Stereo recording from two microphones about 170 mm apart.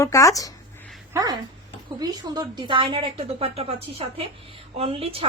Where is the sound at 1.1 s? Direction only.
25° right (ahead or behind).